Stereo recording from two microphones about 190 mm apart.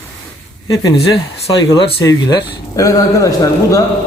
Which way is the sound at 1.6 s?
20° left (ahead or behind).